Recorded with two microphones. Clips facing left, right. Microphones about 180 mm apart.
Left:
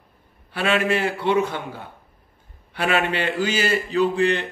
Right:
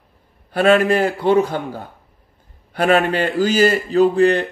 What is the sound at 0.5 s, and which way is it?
A man's voice, 45° right (ahead or behind).